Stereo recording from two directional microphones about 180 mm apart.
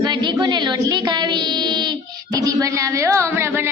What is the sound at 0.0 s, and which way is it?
Child singing, 25° right (ahead or behind).